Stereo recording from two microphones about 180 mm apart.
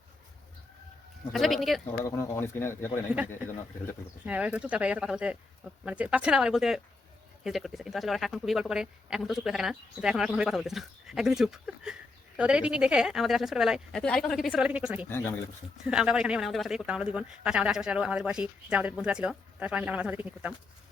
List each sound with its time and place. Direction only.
1.3 s speech: centre (ahead or behind)
2.0 s speech: 15° left (ahead or behind)
4.3 s speech: 5° right (ahead or behind)
15.1 s speech: 10° left (ahead or behind)
15.8 s speech: 5° right (ahead or behind)